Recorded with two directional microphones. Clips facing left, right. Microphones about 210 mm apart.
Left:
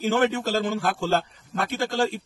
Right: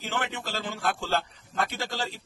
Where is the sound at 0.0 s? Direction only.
45° left (ahead or behind).